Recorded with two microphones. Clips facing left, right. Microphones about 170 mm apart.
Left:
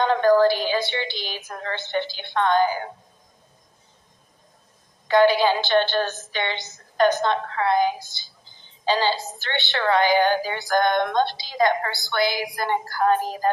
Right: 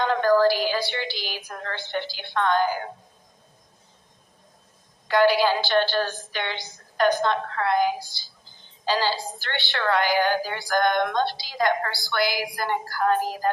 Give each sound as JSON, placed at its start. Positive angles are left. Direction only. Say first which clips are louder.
{"t": 0.0, "sound": "a woman's voice", "louder": "left 2 dB", "side_deg": 20}
{"t": 5.1, "sound": "a woman's voice", "louder": "left 2 dB", "side_deg": 20}